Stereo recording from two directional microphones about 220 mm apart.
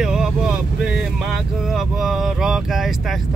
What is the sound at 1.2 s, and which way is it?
Speech, centre (ahead or behind).